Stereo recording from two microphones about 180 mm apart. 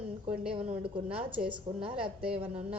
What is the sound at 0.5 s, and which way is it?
A woman's voice, 30° right (ahead or behind).